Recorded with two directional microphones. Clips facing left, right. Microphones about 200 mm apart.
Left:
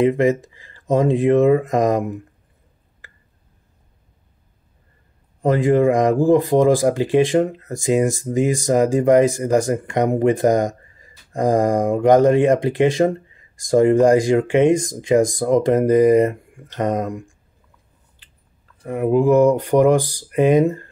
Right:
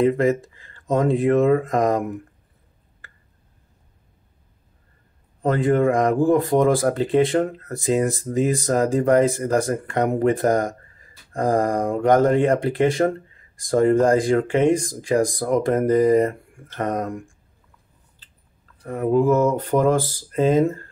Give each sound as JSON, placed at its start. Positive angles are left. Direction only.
{"t": 0.0, "sound": "speech", "side_deg": 20}
{"t": 5.4, "sound": "speech", "side_deg": 15}
{"t": 18.9, "sound": "speech", "side_deg": 10}